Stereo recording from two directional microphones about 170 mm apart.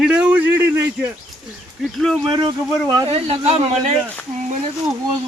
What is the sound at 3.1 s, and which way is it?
Speech, 35° right (ahead or behind).